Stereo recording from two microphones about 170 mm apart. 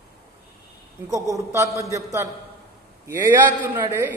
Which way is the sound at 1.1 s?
20° right (ahead or behind).